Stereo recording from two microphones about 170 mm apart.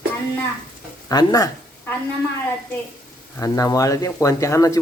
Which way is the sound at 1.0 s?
20° left (ahead or behind).